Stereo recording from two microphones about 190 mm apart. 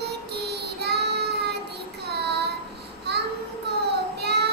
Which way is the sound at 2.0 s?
60° right (ahead or behind).